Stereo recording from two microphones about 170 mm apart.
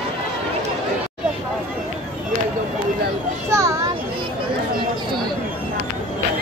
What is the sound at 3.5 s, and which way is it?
Children playing, 15° right (ahead or behind).